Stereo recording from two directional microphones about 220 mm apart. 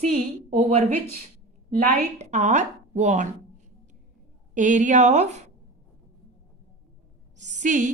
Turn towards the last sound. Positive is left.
turn(degrees=-35)  # may be behind; listen again after turning